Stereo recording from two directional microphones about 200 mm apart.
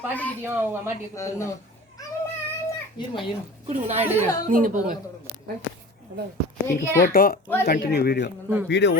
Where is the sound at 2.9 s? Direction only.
25° left (ahead or behind).